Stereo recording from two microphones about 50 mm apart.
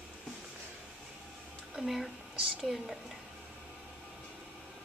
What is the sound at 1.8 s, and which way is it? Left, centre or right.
Speech, centre.